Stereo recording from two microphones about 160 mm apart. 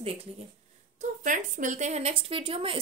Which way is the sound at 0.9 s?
55° right (ahead or behind).